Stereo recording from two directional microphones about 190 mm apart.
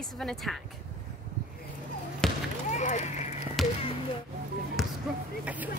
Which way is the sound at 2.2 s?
5° left (ahead or behind).